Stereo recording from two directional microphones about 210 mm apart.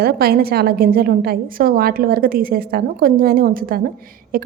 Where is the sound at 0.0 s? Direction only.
45° right (ahead or behind).